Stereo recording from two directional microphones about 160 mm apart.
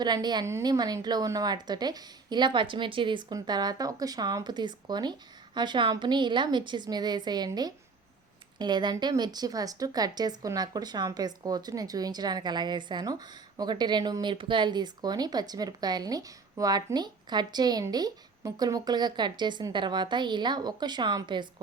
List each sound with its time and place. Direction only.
0.0 s a woman's voice: 25° right (ahead or behind)